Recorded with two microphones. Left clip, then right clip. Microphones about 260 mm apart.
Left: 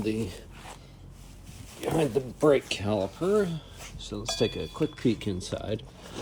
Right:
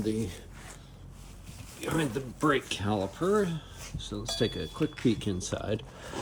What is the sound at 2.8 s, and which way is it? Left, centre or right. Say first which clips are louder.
Speech: left 2 dB; centre.